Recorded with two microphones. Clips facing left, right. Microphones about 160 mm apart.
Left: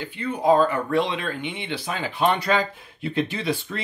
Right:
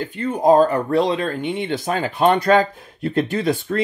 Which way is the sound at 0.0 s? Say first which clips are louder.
Right 5 dB; 45° right (ahead or behind).